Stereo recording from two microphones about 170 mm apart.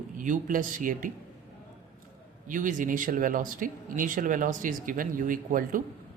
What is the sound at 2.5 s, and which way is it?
Speech, 50° right (ahead or behind).